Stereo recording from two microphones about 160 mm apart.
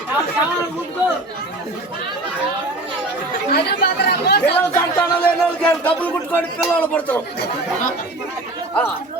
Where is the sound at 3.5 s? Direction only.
90° left.